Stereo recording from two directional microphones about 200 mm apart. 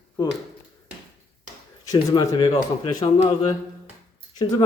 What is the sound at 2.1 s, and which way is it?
Speech, 25° left (ahead or behind).